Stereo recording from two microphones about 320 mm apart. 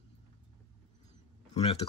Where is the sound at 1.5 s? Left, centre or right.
Centre.